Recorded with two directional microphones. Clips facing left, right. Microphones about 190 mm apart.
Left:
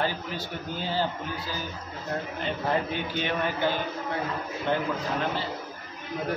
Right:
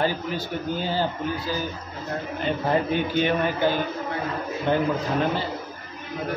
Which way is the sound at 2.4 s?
15° right (ahead or behind).